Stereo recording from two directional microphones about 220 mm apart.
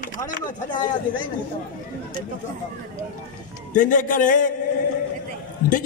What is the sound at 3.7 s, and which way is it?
Speech, 35° left (ahead or behind).